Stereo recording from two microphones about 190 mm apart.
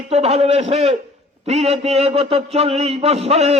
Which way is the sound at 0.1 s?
35° right (ahead or behind).